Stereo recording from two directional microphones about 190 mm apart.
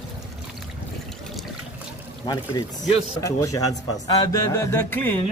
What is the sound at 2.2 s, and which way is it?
Speech, 20° left (ahead or behind).